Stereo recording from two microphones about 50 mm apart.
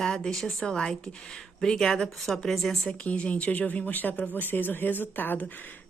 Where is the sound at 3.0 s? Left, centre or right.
Left.